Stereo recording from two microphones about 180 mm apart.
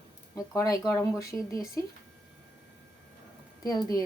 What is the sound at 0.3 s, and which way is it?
Speech, 20° left (ahead or behind).